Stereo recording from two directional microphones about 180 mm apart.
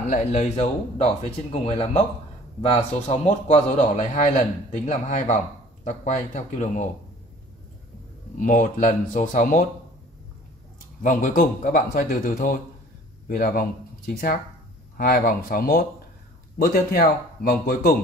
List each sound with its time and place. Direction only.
0.1 s speech: 40° left (ahead or behind)
8.4 s speech: 45° left (ahead or behind)
11.0 s speech: 50° left (ahead or behind)